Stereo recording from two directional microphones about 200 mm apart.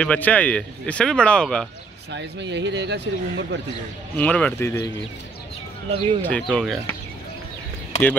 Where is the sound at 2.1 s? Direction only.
60° right (ahead or behind).